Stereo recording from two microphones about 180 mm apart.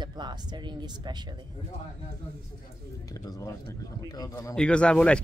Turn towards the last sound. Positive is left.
turn(degrees=5)  # may be behind; listen again after turning